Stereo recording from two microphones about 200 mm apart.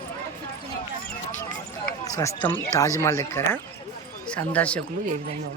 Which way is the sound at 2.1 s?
15° left (ahead or behind).